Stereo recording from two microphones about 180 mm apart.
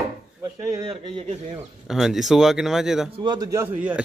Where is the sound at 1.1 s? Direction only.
35° right (ahead or behind).